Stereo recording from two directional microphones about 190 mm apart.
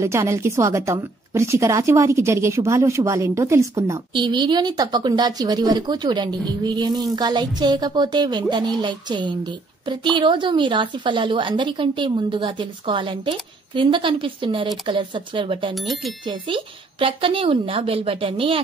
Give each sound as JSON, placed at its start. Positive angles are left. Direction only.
{"t": 0.0, "sound": "a woman's voice", "side_deg": -15}
{"t": 15.7, "sound": "speech", "side_deg": 0}
{"t": 16.3, "sound": "a woman's voice", "side_deg": -25}